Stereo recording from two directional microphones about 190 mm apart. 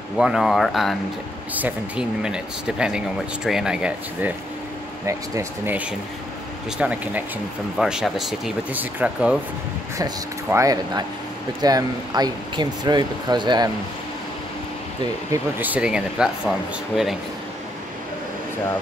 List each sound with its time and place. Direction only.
0.2 s speech: centre (ahead or behind)
9.9 s speech: 15° right (ahead or behind)
15.3 s speech: 10° right (ahead or behind)